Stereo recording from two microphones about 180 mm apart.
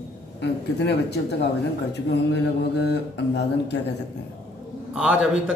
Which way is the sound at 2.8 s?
70° left (ahead or behind).